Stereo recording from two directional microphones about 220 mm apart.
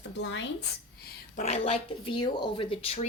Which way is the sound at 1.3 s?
30° left (ahead or behind).